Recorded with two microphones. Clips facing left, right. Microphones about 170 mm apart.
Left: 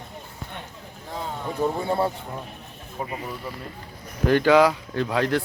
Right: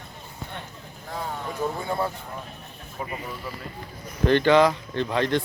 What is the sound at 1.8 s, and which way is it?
Speech, 30° left (ahead or behind).